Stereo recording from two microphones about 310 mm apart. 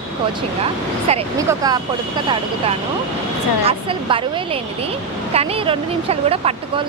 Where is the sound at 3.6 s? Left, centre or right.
Centre.